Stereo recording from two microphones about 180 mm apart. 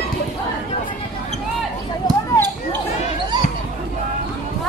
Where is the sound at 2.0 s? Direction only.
20° left (ahead or behind).